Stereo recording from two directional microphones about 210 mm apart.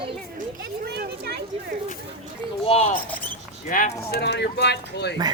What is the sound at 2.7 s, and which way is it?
Speech, 30° left (ahead or behind).